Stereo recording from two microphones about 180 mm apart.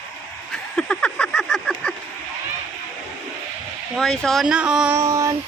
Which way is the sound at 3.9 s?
Centre (ahead or behind).